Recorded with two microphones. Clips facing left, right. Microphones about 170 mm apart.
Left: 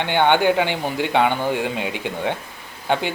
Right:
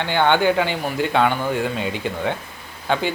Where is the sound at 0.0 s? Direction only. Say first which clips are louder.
Left 1 dB; 15° left (ahead or behind).